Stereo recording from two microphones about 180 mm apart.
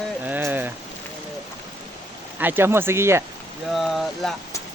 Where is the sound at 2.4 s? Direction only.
10° right (ahead or behind).